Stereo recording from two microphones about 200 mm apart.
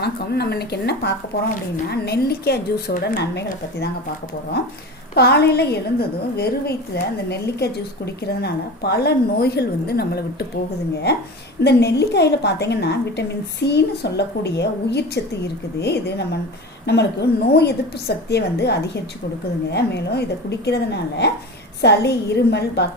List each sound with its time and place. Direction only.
0.0 s a woman's voice: 55° left (ahead or behind)
5.1 s a woman's voice: 55° left (ahead or behind)
11.6 s a woman's voice: 55° left (ahead or behind)